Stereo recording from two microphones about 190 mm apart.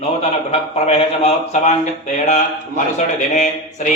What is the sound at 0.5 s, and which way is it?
A man's voice, 35° left (ahead or behind).